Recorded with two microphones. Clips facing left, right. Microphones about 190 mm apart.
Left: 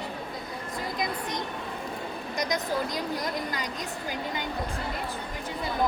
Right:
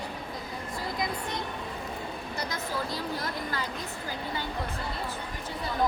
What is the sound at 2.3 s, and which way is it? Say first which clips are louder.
Vehicle: left 6 dB; 15° left (ahead or behind).